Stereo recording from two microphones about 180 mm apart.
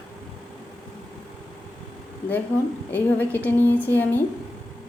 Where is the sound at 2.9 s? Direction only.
10° left (ahead or behind).